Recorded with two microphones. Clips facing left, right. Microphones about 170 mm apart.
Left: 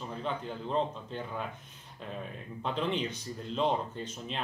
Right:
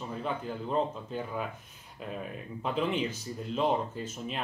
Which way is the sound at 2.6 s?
5° right (ahead or behind).